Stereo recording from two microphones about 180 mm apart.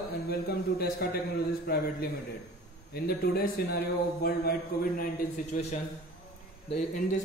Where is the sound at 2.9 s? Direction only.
60° left (ahead or behind); by 7.0 s 40° left (ahead or behind).